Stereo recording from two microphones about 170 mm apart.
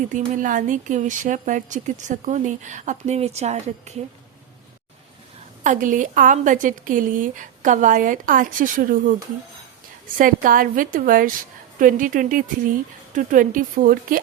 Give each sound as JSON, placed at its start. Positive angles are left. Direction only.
{"t": 0.3, "sound": "a woman's voice", "side_deg": -50}
{"t": 5.6, "sound": "a woman's voice", "side_deg": -50}
{"t": 10.2, "sound": "a woman's voice", "side_deg": -55}